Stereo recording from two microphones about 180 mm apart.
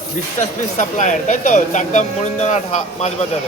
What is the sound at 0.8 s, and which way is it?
Speech, 45° left (ahead or behind).